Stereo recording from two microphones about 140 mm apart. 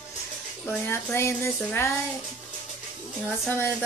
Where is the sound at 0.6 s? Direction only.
15° left (ahead or behind).